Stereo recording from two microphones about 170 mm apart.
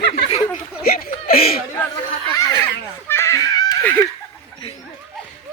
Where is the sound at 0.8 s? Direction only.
60° left (ahead or behind).